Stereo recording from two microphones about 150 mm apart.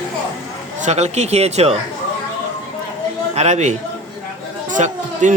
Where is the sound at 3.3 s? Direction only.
45° right (ahead or behind).